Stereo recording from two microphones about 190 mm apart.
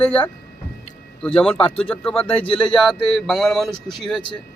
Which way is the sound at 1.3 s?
30° left (ahead or behind).